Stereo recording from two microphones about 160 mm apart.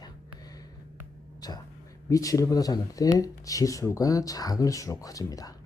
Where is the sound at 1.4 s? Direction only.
25° left (ahead or behind).